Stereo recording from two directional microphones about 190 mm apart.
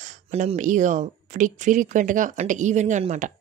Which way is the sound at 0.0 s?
35° right (ahead or behind).